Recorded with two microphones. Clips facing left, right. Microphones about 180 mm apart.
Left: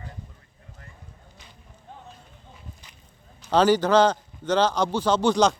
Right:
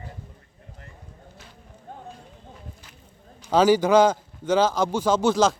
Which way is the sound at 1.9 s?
50° right (ahead or behind).